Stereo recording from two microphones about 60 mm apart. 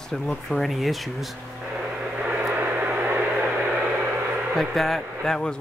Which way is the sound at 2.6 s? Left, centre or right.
Right.